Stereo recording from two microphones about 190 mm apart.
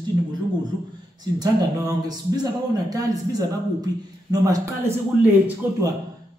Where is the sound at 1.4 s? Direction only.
20° right (ahead or behind).